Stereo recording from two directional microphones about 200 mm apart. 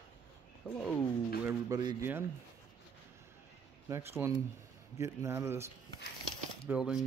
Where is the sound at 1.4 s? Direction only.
10° right (ahead or behind).